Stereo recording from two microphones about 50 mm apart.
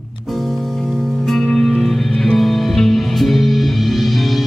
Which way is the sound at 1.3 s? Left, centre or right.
Centre.